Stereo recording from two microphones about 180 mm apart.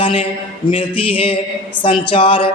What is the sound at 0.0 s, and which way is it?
A man's voice, 30° left (ahead or behind).